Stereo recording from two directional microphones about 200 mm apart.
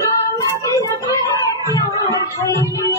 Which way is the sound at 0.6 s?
15° left (ahead or behind).